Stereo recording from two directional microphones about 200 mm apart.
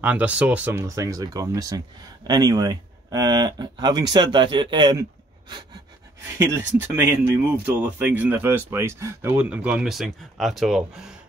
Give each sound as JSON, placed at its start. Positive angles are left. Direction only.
{"t": 0.0, "sound": "speech", "side_deg": -5}
{"t": 6.3, "sound": "speech", "side_deg": -10}